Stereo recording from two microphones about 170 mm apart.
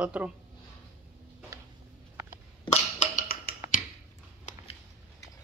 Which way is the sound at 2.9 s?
55° left (ahead or behind).